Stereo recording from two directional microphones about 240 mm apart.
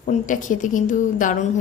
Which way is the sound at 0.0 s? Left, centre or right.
Left.